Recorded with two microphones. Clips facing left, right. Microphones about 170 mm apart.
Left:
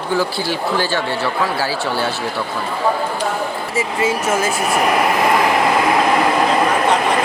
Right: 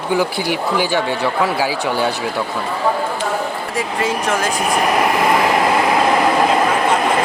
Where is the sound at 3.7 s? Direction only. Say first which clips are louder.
Left 2 dB; 5° left (ahead or behind).